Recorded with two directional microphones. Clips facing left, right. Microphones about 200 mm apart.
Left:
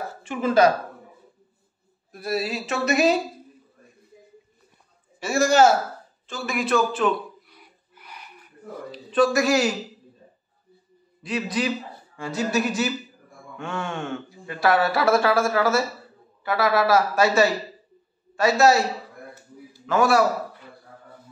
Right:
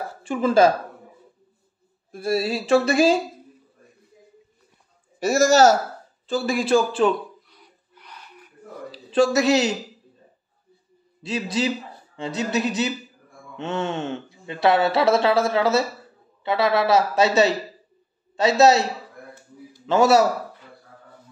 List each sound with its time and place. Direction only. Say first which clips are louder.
0.2 s a man's voice: right 2 dB; 30° right (ahead or behind)
2.1 s speech: right 4 dB; 30° right (ahead or behind)
5.2 s a man's voice: right 2 dB; 40° right (ahead or behind)
7.5 s a sound: even; 10° left (ahead or behind)
8.9 s speech: right 1 dB; 25° right (ahead or behind)
11.2 s a man's voice: right 1 dB; 25° right (ahead or behind)
19.9 s speech: right 3 dB; 25° right (ahead or behind)